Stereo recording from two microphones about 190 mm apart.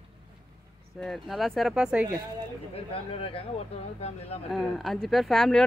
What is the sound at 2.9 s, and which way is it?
Speech, 30° left (ahead or behind).